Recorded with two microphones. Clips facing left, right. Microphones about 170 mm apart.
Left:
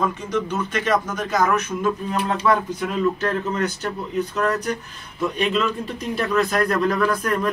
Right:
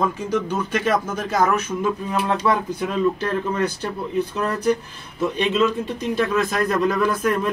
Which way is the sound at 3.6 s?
30° right (ahead or behind).